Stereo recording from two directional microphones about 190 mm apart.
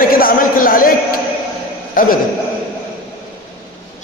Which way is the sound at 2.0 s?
45° left (ahead or behind).